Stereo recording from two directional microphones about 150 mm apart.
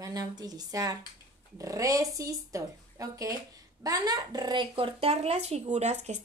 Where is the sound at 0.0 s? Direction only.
25° right (ahead or behind).